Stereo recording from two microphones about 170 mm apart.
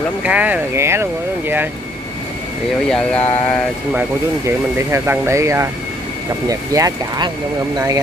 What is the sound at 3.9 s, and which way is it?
Speech, 10° right (ahead or behind).